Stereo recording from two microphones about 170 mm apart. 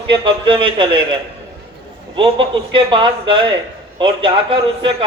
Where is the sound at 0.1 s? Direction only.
30° right (ahead or behind).